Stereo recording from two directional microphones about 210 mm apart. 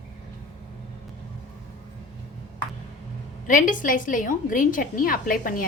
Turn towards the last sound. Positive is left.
turn(degrees=40)  # may be behind; listen again after turning